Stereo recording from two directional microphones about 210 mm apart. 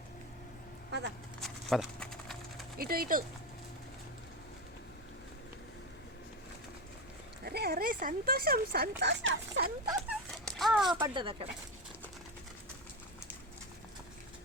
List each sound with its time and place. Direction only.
0.9 s a sound: 55° right (ahead or behind)
1.4 s horse: centre (ahead or behind)
2.7 s speech: 45° right (ahead or behind)
7.4 s speech: 50° right (ahead or behind)
9.0 s speech: 60° right (ahead or behind)
10.3 s a sound: centre (ahead or behind)
11.0 s speech: 20° right (ahead or behind)